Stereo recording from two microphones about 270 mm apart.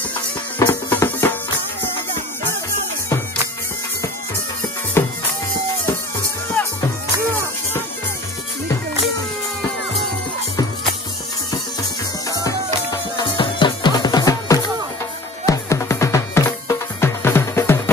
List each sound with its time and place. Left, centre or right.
0.6 s music: centre
5.0 s music: centre
6.6 s music: centre
12.3 s music: centre